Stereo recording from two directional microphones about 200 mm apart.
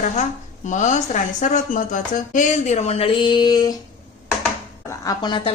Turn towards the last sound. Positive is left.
turn(degrees=25)  # may be behind; listen again after turning